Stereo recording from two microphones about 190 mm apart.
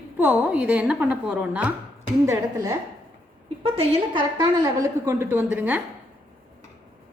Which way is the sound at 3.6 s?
30° right (ahead or behind).